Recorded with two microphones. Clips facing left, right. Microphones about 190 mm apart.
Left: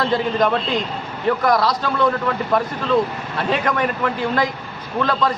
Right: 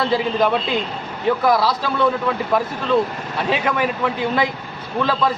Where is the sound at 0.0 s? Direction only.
5° right (ahead or behind).